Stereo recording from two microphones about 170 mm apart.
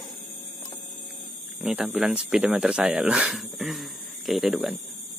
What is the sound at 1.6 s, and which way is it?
Speech, 5° right (ahead or behind).